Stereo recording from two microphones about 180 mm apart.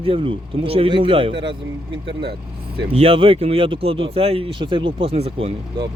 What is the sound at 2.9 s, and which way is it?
Speech, 35° right (ahead or behind).